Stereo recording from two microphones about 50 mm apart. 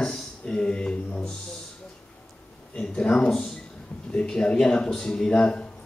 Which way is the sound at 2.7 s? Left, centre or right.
Centre.